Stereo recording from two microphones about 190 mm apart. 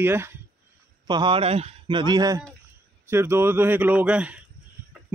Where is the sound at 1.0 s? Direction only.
25° right (ahead or behind).